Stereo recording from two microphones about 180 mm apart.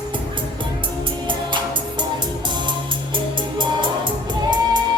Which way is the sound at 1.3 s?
25° right (ahead or behind).